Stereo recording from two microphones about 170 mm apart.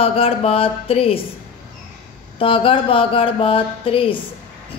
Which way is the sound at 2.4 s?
30° left (ahead or behind).